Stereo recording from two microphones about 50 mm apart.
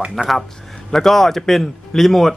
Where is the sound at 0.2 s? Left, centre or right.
Centre.